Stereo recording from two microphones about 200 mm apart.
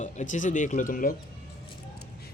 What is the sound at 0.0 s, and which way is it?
Speech, 40° left (ahead or behind).